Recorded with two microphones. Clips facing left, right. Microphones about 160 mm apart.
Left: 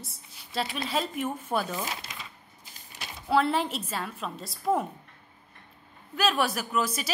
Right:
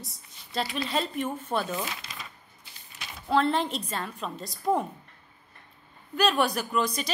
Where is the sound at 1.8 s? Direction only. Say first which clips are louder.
Even; 35° left (ahead or behind).